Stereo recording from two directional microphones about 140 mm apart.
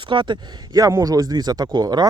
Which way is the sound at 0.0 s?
35° right (ahead or behind).